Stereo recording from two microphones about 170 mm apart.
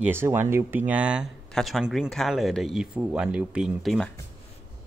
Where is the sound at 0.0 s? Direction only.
15° right (ahead or behind).